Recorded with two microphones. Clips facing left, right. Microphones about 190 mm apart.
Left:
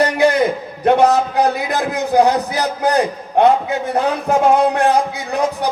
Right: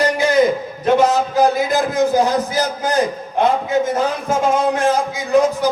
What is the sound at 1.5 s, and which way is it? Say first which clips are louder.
A man's voice: right 3 dB; 65° left (ahead or behind).